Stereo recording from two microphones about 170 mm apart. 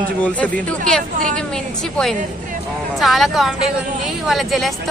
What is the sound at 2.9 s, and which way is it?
Speech, centre (ahead or behind).